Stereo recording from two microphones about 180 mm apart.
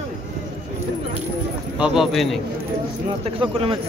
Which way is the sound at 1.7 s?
5° right (ahead or behind).